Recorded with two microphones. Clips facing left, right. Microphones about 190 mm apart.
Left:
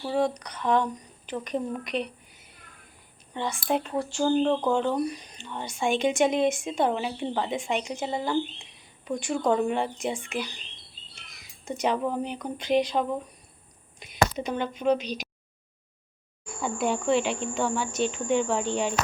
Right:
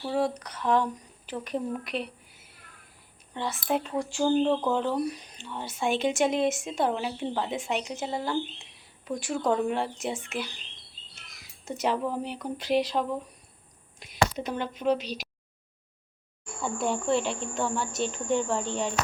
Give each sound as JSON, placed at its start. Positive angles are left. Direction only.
{"t": 0.0, "sound": "speech", "side_deg": 0}
{"t": 11.6, "sound": "speech", "side_deg": 0}
{"t": 14.3, "sound": "speech", "side_deg": 0}
{"t": 16.8, "sound": "speech", "side_deg": 0}